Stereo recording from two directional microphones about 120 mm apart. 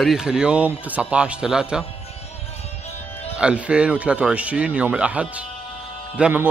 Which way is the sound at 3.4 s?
10° right (ahead or behind).